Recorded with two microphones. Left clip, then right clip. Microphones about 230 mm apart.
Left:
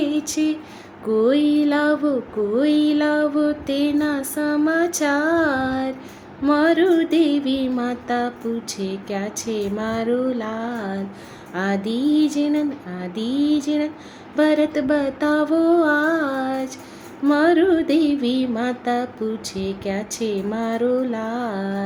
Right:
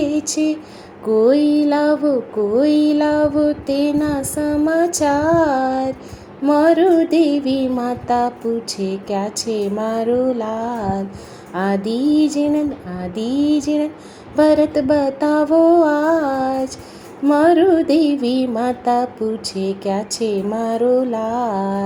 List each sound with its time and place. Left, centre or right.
0.0 s a sound: centre
1.2 s music: centre
9.4 s speech: centre
9.8 s music: centre